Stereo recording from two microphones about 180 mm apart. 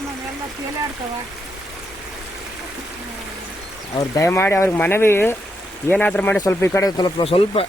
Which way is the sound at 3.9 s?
20° left (ahead or behind).